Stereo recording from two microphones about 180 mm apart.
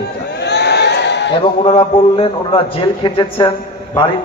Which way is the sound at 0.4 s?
65° left (ahead or behind).